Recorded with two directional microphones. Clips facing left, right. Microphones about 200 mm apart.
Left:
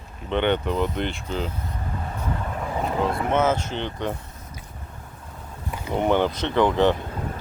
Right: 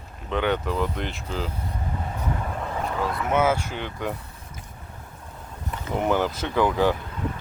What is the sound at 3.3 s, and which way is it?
Speech, 10° right (ahead or behind).